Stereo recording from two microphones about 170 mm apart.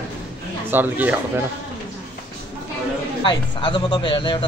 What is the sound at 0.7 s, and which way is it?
Speech, 10° right (ahead or behind).